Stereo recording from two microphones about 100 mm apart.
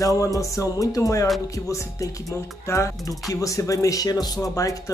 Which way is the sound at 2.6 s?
30° left (ahead or behind).